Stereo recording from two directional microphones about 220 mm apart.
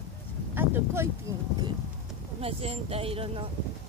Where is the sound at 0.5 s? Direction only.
10° right (ahead or behind).